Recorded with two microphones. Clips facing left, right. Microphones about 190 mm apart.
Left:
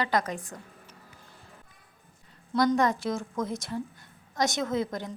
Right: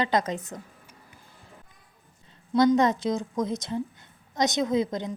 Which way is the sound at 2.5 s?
20° right (ahead or behind).